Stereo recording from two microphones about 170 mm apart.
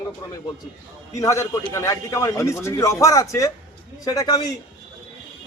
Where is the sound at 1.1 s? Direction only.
20° left (ahead or behind).